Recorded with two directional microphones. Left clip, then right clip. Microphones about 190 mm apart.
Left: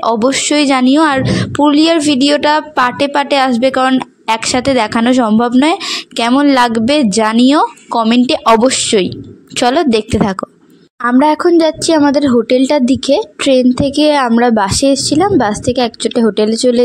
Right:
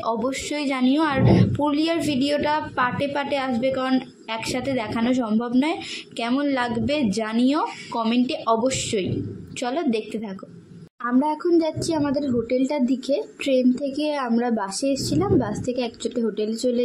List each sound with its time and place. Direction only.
0.0 s a woman's voice: 50° left (ahead or behind)